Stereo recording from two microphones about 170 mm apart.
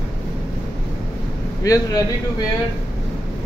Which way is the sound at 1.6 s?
20° left (ahead or behind).